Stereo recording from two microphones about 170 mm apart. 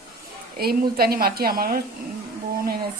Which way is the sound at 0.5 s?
65° right (ahead or behind).